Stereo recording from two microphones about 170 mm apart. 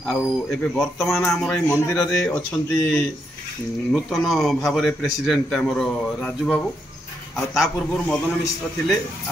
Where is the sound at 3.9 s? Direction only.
Centre (ahead or behind).